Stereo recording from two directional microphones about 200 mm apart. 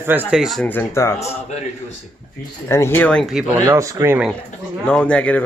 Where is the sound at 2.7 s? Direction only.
10° left (ahead or behind).